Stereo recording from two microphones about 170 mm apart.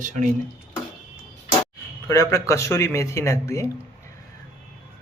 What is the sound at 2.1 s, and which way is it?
Speech, 20° left (ahead or behind).